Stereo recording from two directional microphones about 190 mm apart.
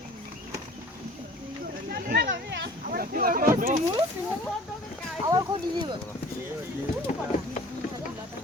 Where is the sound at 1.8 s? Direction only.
55° right (ahead or behind).